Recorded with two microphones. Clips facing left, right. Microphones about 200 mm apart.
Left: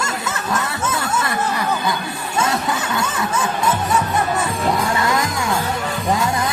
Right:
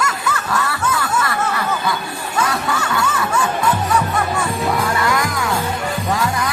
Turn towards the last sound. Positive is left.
turn(degrees=20)  # may be behind; listen again after turning